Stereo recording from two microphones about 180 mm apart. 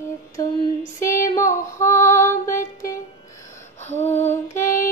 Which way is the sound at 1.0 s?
15° left (ahead or behind).